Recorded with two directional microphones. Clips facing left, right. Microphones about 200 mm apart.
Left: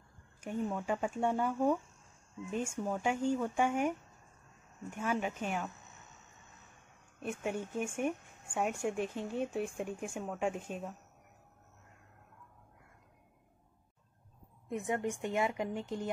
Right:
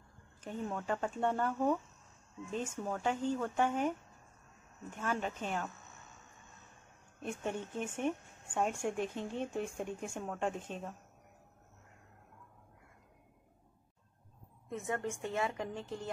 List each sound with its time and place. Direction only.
0.4 s speech: 10° left (ahead or behind)
7.2 s speech: 10° left (ahead or behind)
14.7 s speech: 15° left (ahead or behind)